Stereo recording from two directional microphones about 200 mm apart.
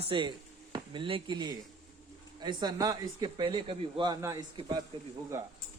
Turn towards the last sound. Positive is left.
turn(degrees=-15)  # may be behind; listen again after turning